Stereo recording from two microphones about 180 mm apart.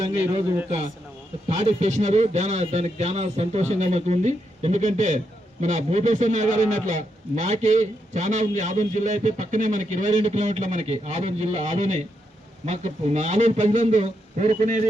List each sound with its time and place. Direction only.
1.5 s a man's voice: 40° right (ahead or behind)